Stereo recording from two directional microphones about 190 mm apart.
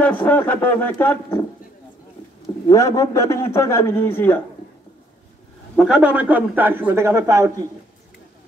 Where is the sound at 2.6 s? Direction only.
20° left (ahead or behind).